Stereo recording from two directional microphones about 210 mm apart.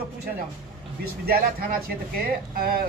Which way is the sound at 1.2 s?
45° right (ahead or behind).